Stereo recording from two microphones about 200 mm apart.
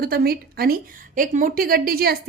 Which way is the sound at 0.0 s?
50° right (ahead or behind).